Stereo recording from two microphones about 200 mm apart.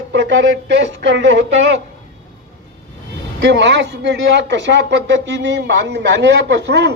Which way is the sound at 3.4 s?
65° right (ahead or behind).